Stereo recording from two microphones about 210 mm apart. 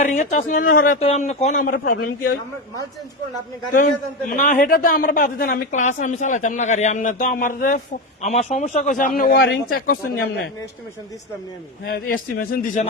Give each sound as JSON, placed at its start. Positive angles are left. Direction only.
{"t": 0.0, "sound": "speech", "side_deg": 35}
{"t": 1.0, "sound": "a woman's voice", "side_deg": 30}
{"t": 4.3, "sound": "a woman's voice", "side_deg": 40}
{"t": 11.9, "sound": "a woman's voice", "side_deg": 40}